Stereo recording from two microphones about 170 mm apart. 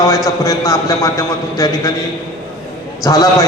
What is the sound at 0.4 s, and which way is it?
A man's voice, 20° left (ahead or behind).